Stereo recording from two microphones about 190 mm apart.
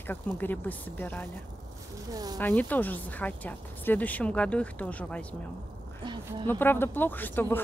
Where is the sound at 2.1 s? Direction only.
20° right (ahead or behind).